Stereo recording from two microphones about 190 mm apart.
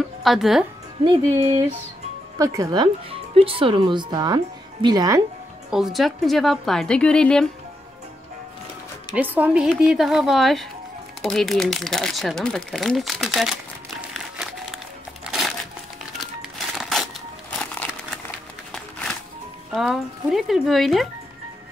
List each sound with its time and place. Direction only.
0.2 s speech: centre (ahead or behind)
2.3 s speech: 20° right (ahead or behind)
5.7 s speech: centre (ahead or behind)
9.1 s speech: 10° right (ahead or behind)
14.1 s a sound: centre (ahead or behind)
15.2 s crumpling: centre (ahead or behind)
18.7 s music: 5° left (ahead or behind)
19.7 s speech: centre (ahead or behind)